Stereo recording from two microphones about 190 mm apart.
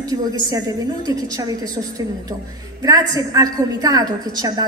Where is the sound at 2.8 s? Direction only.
20° right (ahead or behind).